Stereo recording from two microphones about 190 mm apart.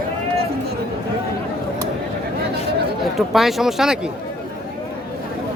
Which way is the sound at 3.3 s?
Centre (ahead or behind).